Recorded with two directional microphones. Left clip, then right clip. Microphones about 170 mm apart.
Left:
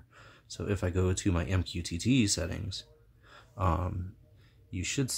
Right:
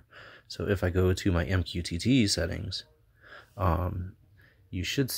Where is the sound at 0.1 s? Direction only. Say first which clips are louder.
Right 4 dB; 20° right (ahead or behind).